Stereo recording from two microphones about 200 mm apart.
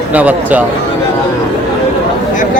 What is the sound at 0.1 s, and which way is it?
Speech, 5° right (ahead or behind).